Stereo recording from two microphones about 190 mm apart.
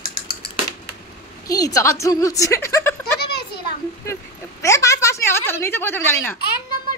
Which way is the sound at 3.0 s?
55° left (ahead or behind).